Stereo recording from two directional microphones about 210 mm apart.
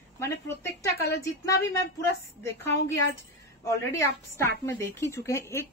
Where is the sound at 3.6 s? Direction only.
15° left (ahead or behind).